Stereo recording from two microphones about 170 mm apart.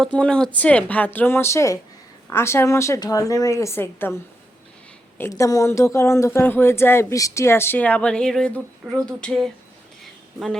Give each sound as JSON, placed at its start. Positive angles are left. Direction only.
{"t": 0.0, "sound": "a woman's voice", "side_deg": 5}